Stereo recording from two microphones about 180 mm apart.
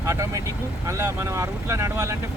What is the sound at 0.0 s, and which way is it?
Speech, 15° right (ahead or behind).